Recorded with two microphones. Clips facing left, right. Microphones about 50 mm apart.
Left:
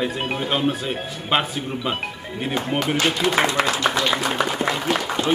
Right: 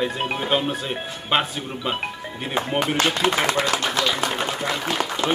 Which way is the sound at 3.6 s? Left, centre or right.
Left.